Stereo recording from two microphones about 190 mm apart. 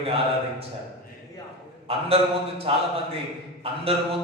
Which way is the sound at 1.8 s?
30° right (ahead or behind).